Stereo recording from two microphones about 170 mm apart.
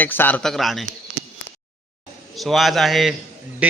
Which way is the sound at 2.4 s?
Centre (ahead or behind).